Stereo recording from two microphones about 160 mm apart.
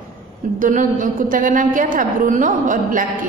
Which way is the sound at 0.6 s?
55° right (ahead or behind).